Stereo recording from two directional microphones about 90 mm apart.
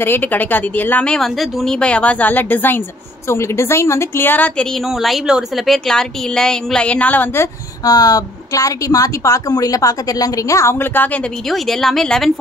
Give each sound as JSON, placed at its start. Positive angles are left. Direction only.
{"t": 0.0, "sound": "speech", "side_deg": 20}
{"t": 1.0, "sound": "speech", "side_deg": 5}
{"t": 4.8, "sound": "speech", "side_deg": 0}
{"t": 7.8, "sound": "speech", "side_deg": 45}
{"t": 11.5, "sound": "speech", "side_deg": 5}